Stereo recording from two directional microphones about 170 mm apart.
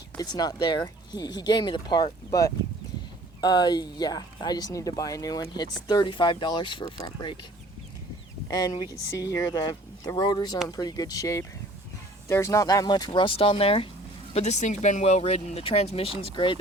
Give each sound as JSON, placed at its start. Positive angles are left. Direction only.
{"t": 0.2, "sound": "speech", "side_deg": 25}
{"t": 8.4, "sound": "speech", "side_deg": 25}